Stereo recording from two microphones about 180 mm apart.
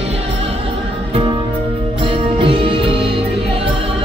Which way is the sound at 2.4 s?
30° right (ahead or behind).